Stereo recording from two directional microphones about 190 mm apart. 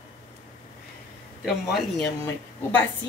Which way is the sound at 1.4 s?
Centre (ahead or behind).